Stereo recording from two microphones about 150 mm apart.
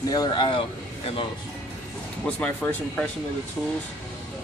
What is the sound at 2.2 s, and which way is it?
Speech, 10° left (ahead or behind).